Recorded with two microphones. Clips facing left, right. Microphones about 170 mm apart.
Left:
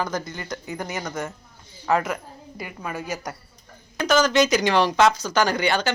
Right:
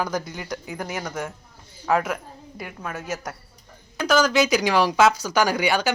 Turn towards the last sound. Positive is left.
turn(degrees=-10)  # may be behind; listen again after turning